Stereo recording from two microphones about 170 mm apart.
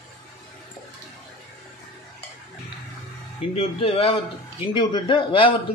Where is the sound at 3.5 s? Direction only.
35° left (ahead or behind).